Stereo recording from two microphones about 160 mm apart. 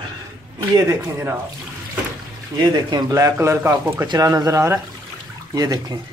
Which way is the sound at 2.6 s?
25° right (ahead or behind).